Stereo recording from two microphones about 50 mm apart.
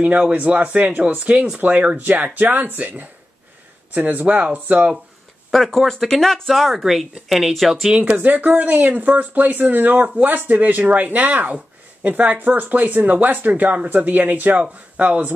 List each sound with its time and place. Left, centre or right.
0.0 s speech: right
5.5 s speech: centre
8.0 s speech: right